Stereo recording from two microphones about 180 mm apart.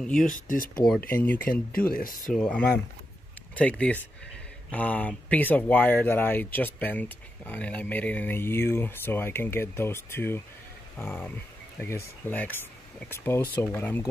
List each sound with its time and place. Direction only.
0.0 s speech: centre (ahead or behind)
0.3 s speech: 50° left (ahead or behind)
0.8 s speech: 5° left (ahead or behind)
1.9 s speech: 50° left (ahead or behind)
2.3 s speech: 5° left (ahead or behind)